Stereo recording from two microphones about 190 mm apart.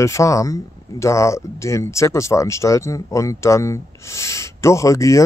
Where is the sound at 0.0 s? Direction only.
15° left (ahead or behind).